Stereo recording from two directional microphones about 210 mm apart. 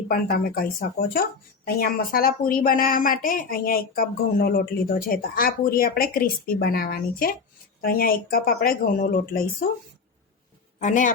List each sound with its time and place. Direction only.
0.1 s a woman's voice: 45° left (ahead or behind)
10.8 s a man's voice: 35° left (ahead or behind)